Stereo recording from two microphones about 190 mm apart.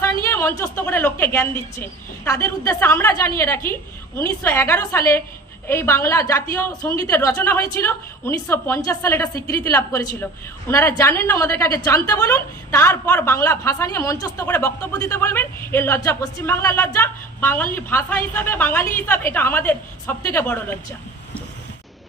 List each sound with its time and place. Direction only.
0.0 s a woman's voice: 10° left (ahead or behind)